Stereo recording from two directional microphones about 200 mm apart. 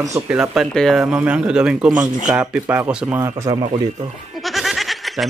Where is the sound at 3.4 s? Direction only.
25° right (ahead or behind).